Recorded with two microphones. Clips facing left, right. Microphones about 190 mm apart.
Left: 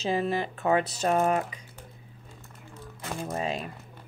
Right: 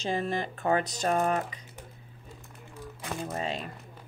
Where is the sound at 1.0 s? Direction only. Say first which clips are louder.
Left 2 dB; 5° left (ahead or behind).